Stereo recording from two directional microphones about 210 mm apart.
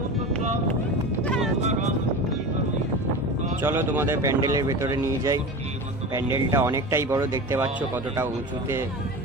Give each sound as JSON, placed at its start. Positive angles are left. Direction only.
{"t": 1.2, "sound": "clip-clop", "side_deg": 5}
{"t": 1.6, "sound": "a sound", "side_deg": -30}
{"t": 3.6, "sound": "speech", "side_deg": -10}